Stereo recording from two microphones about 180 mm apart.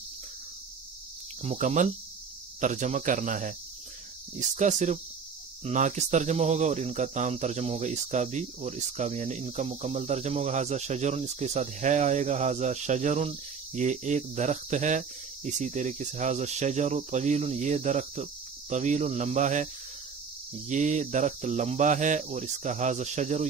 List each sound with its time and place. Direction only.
1.4 s speech: 40° right (ahead or behind)